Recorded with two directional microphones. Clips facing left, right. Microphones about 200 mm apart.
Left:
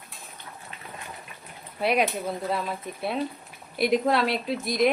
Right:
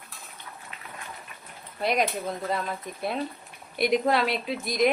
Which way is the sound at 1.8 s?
5° left (ahead or behind).